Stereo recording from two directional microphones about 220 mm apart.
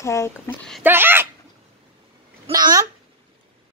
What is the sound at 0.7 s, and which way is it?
Speech, 10° right (ahead or behind).